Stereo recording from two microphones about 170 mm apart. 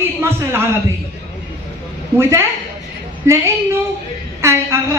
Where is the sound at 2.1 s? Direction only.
15° right (ahead or behind).